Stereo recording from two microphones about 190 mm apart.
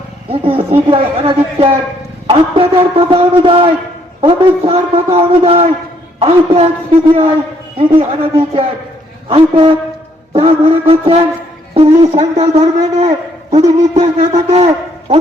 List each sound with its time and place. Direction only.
0.3 s a man's voice: 30° right (ahead or behind)
7.8 s a man's voice: 30° right (ahead or behind)